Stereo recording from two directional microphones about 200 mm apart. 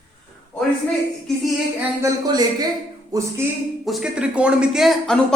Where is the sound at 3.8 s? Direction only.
Centre (ahead or behind).